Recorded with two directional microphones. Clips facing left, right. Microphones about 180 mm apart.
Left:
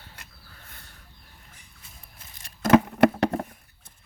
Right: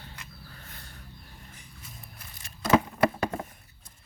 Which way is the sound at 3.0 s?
70° left (ahead or behind).